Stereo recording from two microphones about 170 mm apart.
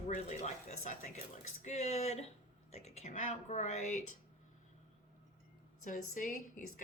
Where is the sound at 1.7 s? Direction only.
40° left (ahead or behind).